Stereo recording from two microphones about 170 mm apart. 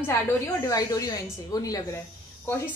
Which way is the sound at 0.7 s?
20° left (ahead or behind).